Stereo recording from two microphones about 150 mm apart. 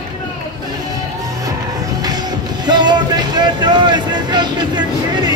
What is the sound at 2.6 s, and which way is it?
Speech, 30° right (ahead or behind).